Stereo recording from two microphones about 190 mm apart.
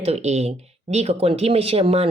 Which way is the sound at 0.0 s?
35° right (ahead or behind).